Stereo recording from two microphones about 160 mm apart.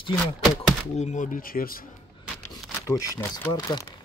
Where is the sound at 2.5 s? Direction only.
20° left (ahead or behind).